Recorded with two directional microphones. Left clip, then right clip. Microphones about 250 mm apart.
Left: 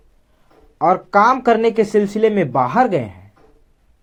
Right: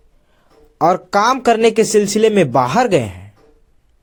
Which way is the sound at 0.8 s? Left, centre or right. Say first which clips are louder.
Even; right.